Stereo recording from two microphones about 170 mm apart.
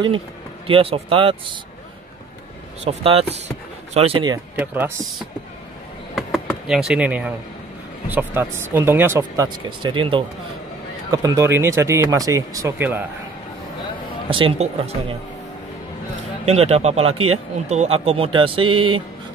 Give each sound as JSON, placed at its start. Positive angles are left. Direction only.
{"t": 0.7, "sound": "speech", "side_deg": -35}
{"t": 2.8, "sound": "speech", "side_deg": -35}
{"t": 4.6, "sound": "speech", "side_deg": -10}
{"t": 6.1, "sound": "a sound", "side_deg": 0}
{"t": 8.1, "sound": "speech", "side_deg": -10}
{"t": 14.3, "sound": "speech", "side_deg": -35}
{"t": 16.4, "sound": "speech", "side_deg": -40}